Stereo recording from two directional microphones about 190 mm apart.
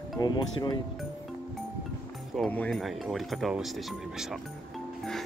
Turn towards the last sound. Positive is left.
turn(degrees=0)  # may be behind; listen again after turning